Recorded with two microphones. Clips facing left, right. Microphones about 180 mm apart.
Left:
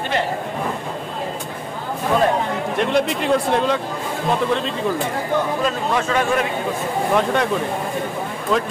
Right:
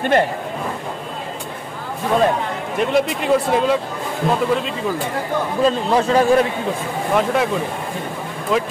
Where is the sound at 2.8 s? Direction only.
Centre (ahead or behind).